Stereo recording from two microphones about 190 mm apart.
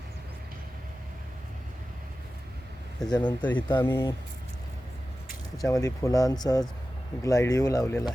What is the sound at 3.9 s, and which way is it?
Speech, 25° left (ahead or behind).